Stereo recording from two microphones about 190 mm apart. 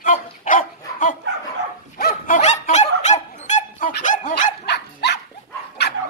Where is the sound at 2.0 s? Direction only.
55° left (ahead or behind).